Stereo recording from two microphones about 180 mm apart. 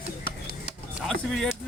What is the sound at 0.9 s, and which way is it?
Speech, centre (ahead or behind).